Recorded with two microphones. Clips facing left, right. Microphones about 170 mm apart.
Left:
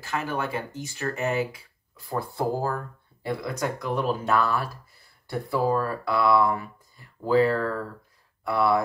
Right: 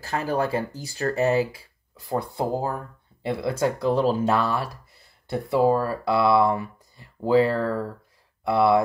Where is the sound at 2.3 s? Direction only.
20° right (ahead or behind).